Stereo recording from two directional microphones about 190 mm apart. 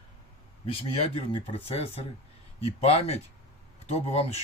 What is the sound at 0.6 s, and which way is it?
Speech, 30° left (ahead or behind).